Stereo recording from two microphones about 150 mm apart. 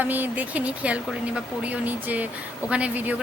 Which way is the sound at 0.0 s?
10° right (ahead or behind).